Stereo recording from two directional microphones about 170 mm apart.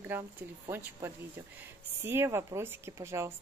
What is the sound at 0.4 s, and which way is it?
Speech, 10° right (ahead or behind).